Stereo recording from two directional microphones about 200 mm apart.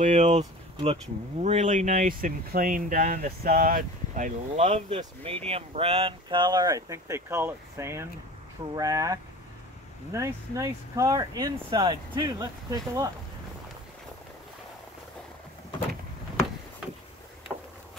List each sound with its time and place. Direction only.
0.0 s speech: 35° right (ahead or behind); by 13.1 s 15° right (ahead or behind)